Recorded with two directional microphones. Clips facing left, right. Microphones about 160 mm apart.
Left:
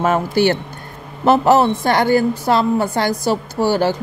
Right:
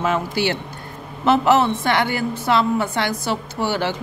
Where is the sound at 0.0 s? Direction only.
45° left (ahead or behind).